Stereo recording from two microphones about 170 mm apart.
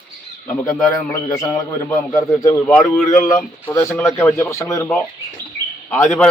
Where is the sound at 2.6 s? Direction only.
10° left (ahead or behind).